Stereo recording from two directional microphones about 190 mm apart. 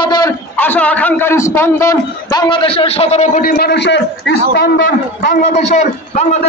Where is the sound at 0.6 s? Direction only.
10° left (ahead or behind).